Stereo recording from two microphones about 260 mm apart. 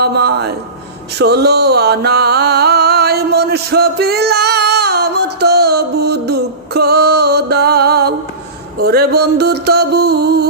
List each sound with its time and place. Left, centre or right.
0.0 s a sound: right
1.2 s music: right
8.8 s mantra: right